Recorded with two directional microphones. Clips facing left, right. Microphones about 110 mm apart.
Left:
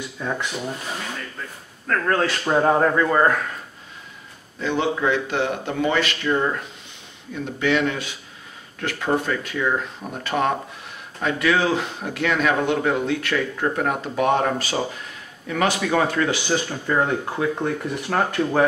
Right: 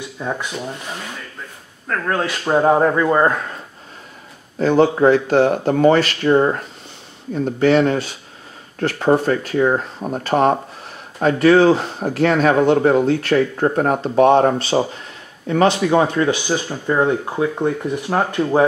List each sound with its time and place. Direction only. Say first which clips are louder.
0.2 s speech: right 2 dB; 15° right (ahead or behind)
1.9 s speech: even; 10° right (ahead or behind)
4.6 s speech: right 9 dB; 40° right (ahead or behind); by 18.6 s 20° right (ahead or behind)